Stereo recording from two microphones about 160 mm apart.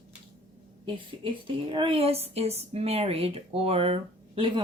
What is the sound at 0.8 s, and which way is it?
A woman's voice, 30° right (ahead or behind).